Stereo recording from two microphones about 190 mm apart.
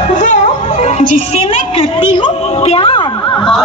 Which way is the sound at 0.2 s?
40° left (ahead or behind).